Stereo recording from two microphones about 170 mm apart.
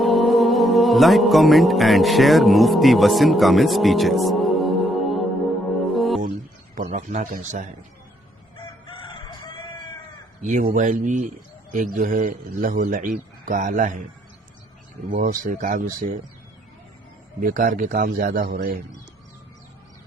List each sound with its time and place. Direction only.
0.0 s music: centre (ahead or behind)
6.7 s a man's voice: 45° right (ahead or behind)
8.5 s fowl: 30° left (ahead or behind)
10.4 s a man's voice: 50° right (ahead or behind)
15.1 s a man's voice: 55° right (ahead or behind)
17.4 s a man's voice: 55° right (ahead or behind)